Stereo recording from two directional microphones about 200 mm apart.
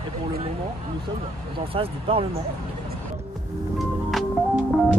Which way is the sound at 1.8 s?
30° right (ahead or behind).